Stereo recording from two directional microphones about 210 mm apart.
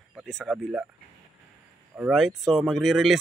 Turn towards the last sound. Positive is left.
turn(degrees=0)  # may be behind; listen again after turning